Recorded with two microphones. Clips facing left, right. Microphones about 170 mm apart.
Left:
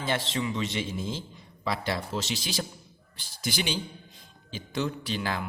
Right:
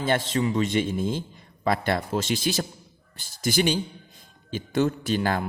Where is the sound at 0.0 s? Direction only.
45° right (ahead or behind).